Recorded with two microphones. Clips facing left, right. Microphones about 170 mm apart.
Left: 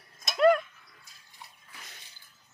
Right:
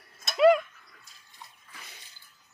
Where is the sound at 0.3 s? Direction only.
5° right (ahead or behind).